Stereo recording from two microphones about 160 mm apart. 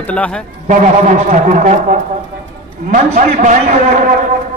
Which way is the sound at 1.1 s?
50° right (ahead or behind).